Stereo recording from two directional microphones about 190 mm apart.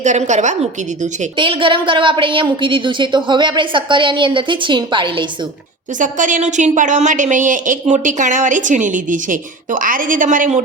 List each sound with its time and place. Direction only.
0.0 s a woman's voice: 40° right (ahead or behind)
1.4 s a woman's voice: 25° right (ahead or behind)
6.0 s a woman's voice: 40° right (ahead or behind)